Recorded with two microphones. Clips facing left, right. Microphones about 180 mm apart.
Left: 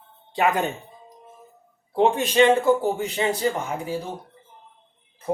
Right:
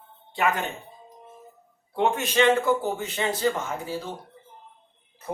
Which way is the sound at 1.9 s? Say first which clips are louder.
Left 4 dB; 35° left (ahead or behind).